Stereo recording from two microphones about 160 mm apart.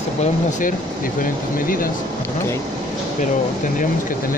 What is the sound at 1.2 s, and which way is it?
Speech, 60° left (ahead or behind).